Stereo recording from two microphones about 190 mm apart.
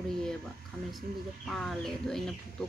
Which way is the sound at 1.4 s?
Centre (ahead or behind).